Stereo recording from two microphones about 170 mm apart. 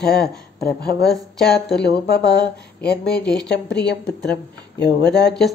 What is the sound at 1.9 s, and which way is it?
Speech, 75° left (ahead or behind).